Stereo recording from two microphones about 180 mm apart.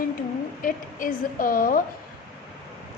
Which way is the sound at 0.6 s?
50° left (ahead or behind).